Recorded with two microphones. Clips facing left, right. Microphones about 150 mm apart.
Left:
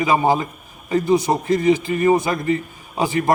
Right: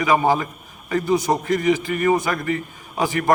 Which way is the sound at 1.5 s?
25° left (ahead or behind).